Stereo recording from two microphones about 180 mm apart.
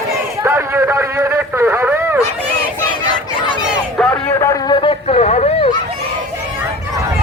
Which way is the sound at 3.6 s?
Centre (ahead or behind).